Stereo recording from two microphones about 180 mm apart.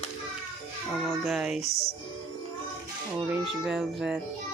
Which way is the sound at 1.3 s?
Centre (ahead or behind).